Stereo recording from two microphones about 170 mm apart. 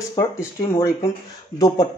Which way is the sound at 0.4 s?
15° left (ahead or behind).